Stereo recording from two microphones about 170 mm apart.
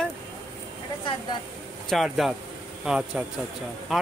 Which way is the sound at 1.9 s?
Centre (ahead or behind).